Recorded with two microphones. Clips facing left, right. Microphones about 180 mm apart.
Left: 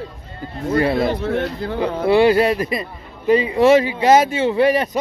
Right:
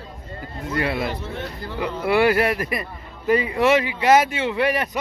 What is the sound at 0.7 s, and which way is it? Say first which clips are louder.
Speech: left 7 dB; 35° left (ahead or behind).